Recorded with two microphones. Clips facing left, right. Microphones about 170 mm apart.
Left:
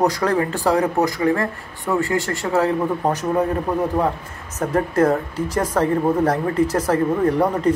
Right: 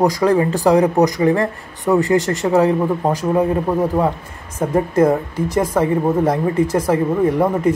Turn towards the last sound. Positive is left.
turn(degrees=-10)  # may be behind; listen again after turning